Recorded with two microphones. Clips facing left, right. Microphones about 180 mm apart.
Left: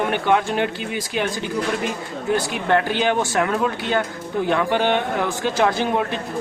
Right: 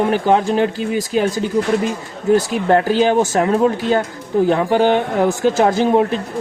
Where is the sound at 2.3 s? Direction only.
35° right (ahead or behind).